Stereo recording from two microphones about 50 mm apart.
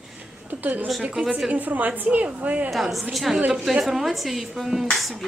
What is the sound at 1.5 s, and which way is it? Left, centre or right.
A woman's voice, right.